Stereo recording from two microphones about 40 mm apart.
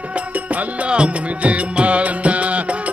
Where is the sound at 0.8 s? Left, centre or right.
Right.